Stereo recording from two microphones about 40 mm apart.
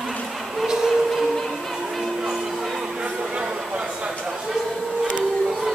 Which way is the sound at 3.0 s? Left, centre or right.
Right.